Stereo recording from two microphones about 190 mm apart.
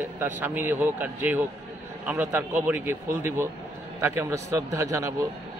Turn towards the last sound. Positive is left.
turn(degrees=-15)  # may be behind; listen again after turning